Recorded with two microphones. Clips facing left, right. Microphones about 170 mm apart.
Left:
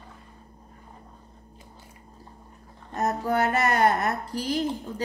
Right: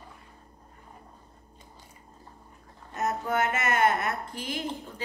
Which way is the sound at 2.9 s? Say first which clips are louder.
Left 3 dB; 35° left (ahead or behind).